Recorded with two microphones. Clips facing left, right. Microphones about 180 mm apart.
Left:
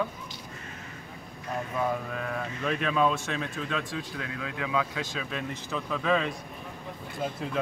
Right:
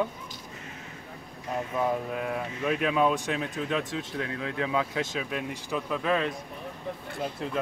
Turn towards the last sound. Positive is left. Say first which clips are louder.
# right 1 dB
turn(degrees=0)  # may be behind; listen again after turning